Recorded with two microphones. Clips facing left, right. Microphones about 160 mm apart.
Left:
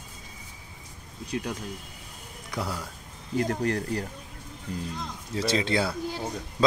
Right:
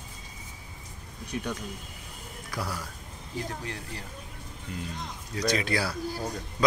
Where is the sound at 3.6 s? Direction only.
45° left (ahead or behind).